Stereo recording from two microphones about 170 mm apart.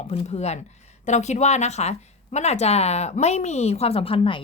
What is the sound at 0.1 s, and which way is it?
Speech, 40° left (ahead or behind).